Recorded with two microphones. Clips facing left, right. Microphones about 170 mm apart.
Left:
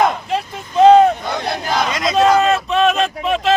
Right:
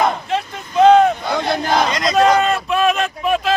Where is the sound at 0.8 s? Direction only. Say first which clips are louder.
Left 2 dB; 30° left (ahead or behind).